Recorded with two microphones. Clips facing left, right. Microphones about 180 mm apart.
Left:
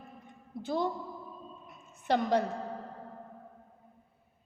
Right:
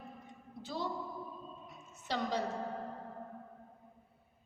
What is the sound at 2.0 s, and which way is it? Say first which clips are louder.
Speech: left 8 dB; 55° left (ahead or behind).